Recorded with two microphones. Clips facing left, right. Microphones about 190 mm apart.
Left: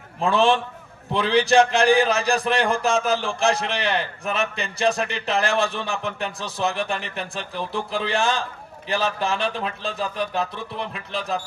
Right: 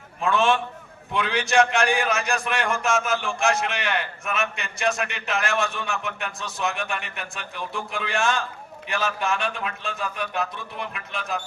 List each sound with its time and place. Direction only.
0.2 s a man's voice: 30° left (ahead or behind)